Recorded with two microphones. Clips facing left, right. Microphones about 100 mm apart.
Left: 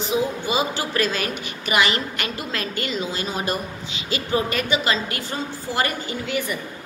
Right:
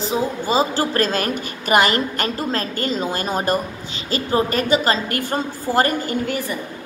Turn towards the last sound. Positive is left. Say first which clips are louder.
# right 5 dB
turn(degrees=-45)  # may be behind; listen again after turning